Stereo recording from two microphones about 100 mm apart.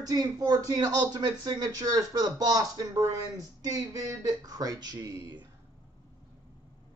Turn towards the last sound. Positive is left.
turn(degrees=-30)  # may be behind; listen again after turning